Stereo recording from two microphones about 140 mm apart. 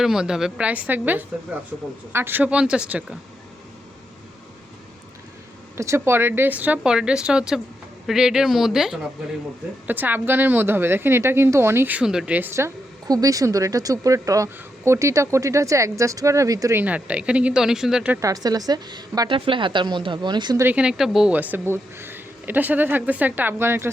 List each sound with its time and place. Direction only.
0.0 s a woman's voice: 5° right (ahead or behind)
5.7 s a woman's voice: 20° right (ahead or behind); by 9.0 s 5° right (ahead or behind)
9.8 s a woman's voice: 15° right (ahead or behind)
16.8 s speech: 10° right (ahead or behind)
18.2 s a woman's voice: 25° right (ahead or behind)
20.7 s speech: 5° right (ahead or behind)